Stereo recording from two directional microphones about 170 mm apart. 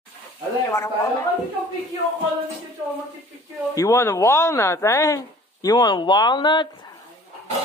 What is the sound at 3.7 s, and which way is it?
Speech, 20° left (ahead or behind).